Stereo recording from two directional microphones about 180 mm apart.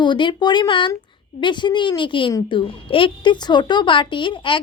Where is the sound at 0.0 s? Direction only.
25° left (ahead or behind).